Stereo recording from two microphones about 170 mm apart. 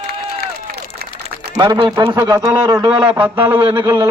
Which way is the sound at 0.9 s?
70° right (ahead or behind).